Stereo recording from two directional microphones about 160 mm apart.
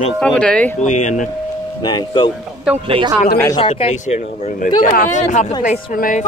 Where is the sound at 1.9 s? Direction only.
30° left (ahead or behind).